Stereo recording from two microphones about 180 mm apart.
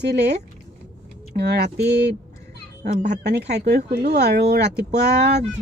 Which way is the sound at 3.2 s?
70° right (ahead or behind).